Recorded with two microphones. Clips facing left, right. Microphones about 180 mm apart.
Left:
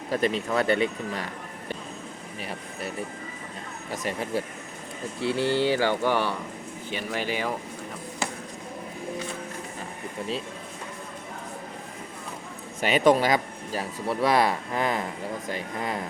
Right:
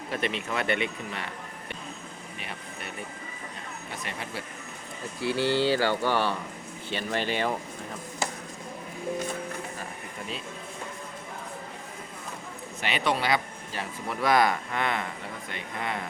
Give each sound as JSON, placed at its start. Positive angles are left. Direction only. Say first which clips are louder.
{"t": 0.1, "sound": "speech", "louder": "left 6 dB", "side_deg": 40}
{"t": 2.4, "sound": "speech", "louder": "left 6 dB", "side_deg": 35}
{"t": 3.9, "sound": "speech", "louder": "left 9 dB", "side_deg": 40}
{"t": 5.2, "sound": "speech", "louder": "left 1 dB", "side_deg": 20}
{"t": 12.8, "sound": "speech", "louder": "left 8 dB", "side_deg": 45}